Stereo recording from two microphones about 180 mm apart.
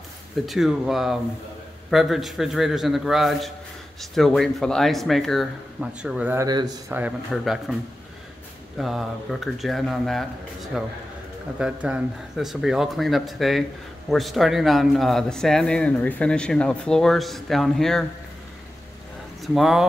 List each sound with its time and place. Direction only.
0.5 s speech: centre (ahead or behind)
6.4 s a man's voice: 20° right (ahead or behind)
6.9 s speech: 5° right (ahead or behind)
8.7 s speech: centre (ahead or behind)
19.4 s speech: centre (ahead or behind)